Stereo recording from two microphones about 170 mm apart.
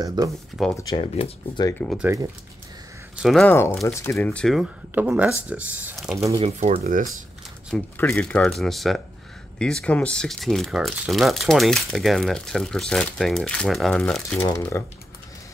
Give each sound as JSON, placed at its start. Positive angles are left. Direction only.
{"t": 0.0, "sound": "speech", "side_deg": -25}
{"t": 0.6, "sound": "speech", "side_deg": 0}
{"t": 0.9, "sound": "speech", "side_deg": 35}
{"t": 1.8, "sound": "speech", "side_deg": 15}
{"t": 3.2, "sound": "speech", "side_deg": 0}
{"t": 3.4, "sound": "speech", "side_deg": 15}
{"t": 4.9, "sound": "speech", "side_deg": -10}
{"t": 6.4, "sound": "speech", "side_deg": -40}
{"t": 7.7, "sound": "speech", "side_deg": 10}
{"t": 14.4, "sound": "speech", "side_deg": 15}